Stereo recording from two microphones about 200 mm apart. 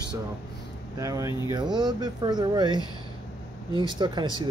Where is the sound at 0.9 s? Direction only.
15° right (ahead or behind).